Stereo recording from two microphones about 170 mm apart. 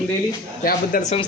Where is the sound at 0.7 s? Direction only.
50° left (ahead or behind).